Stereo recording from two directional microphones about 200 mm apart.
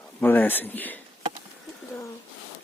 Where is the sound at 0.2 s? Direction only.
10° left (ahead or behind).